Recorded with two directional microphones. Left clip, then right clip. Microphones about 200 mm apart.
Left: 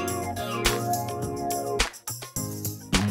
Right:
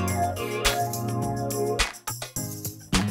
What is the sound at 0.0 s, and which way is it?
Music, centre (ahead or behind).